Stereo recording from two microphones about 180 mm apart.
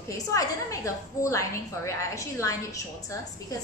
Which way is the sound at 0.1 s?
15° left (ahead or behind).